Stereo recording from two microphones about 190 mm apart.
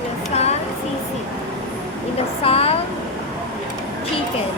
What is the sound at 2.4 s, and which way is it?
Speech, 30° left (ahead or behind).